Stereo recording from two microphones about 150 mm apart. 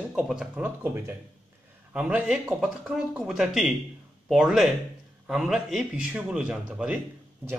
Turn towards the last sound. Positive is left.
turn(degrees=-5)  # may be behind; listen again after turning